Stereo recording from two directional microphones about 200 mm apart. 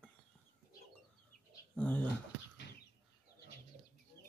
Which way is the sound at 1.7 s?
5° left (ahead or behind).